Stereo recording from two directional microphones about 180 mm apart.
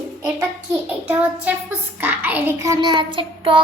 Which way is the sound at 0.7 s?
10° right (ahead or behind).